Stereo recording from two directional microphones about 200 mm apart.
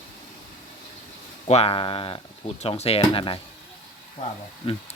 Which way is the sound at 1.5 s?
30° left (ahead or behind).